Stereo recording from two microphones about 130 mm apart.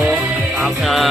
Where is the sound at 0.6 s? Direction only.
Centre (ahead or behind).